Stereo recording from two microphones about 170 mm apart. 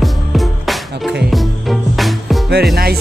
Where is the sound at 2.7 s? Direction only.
65° right (ahead or behind).